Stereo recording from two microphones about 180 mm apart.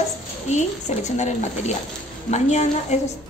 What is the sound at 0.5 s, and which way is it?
Speech, 40° left (ahead or behind).